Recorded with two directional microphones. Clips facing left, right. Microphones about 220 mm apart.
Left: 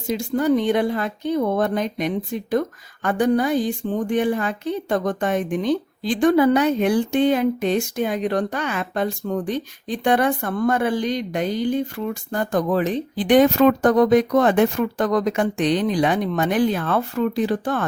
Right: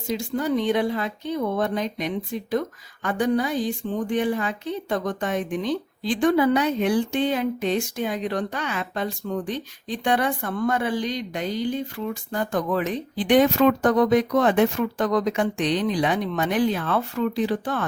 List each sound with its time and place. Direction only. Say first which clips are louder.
0.1 s a woman's voice: left 5 dB; 50° left (ahead or behind)